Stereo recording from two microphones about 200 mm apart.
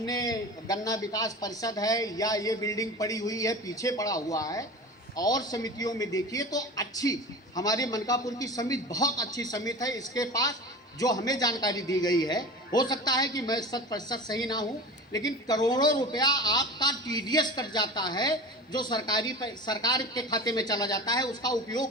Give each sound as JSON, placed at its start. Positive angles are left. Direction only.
{"t": 0.0, "sound": "a man's voice", "side_deg": 20}